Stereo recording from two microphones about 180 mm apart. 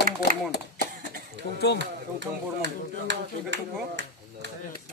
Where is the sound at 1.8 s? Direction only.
75° right (ahead or behind).